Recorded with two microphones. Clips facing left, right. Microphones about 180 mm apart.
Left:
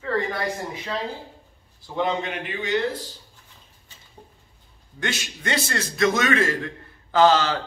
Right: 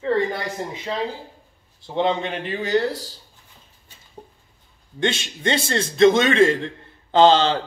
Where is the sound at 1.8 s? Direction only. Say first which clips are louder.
Right 3 dB; 25° right (ahead or behind).